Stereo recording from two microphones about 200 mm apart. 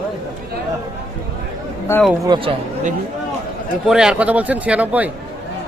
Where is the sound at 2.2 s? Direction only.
25° right (ahead or behind).